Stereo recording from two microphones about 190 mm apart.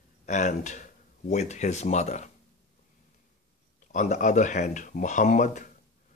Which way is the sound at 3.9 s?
40° left (ahead or behind).